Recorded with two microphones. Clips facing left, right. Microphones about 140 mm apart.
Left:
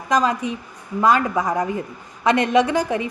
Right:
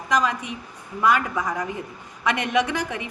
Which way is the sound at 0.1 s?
30° left (ahead or behind).